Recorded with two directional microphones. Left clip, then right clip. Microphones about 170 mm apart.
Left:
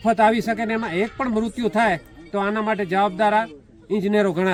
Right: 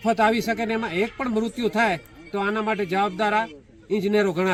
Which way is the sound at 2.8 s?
45° left (ahead or behind).